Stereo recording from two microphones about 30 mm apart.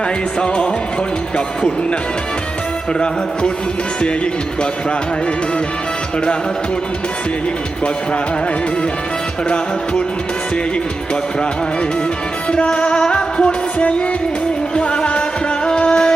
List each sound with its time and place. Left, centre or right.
0.3 s music: left
12.5 s music: left
14.8 s music: left